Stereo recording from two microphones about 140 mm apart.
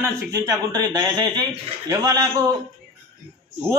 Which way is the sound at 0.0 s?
25° right (ahead or behind).